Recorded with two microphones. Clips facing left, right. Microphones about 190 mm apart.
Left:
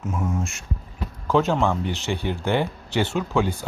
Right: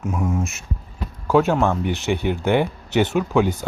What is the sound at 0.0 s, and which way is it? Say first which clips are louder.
A man's voice: right 3 dB; 10° right (ahead or behind).